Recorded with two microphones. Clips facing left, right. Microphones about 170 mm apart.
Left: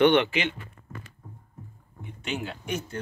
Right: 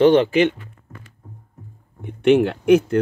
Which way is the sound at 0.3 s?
45° right (ahead or behind).